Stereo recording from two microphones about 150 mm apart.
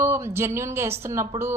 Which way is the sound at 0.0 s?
15° right (ahead or behind).